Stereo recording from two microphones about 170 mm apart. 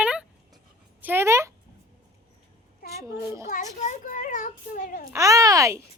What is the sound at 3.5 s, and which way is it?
A child's voice, 45° left (ahead or behind).